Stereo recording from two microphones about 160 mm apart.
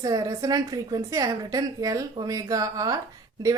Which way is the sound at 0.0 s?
20° right (ahead or behind).